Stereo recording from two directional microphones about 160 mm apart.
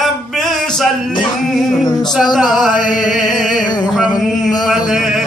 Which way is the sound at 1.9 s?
25° left (ahead or behind).